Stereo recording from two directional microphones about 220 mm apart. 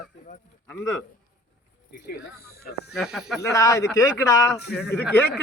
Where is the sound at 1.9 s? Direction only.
45° left (ahead or behind).